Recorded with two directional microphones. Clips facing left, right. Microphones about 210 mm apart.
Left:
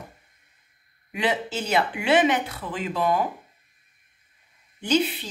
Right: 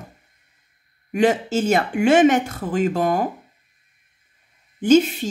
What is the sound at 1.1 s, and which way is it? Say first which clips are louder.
Speech: right 8 dB; 45° right (ahead or behind).